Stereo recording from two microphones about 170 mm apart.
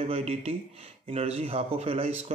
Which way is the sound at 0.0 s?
40° right (ahead or behind).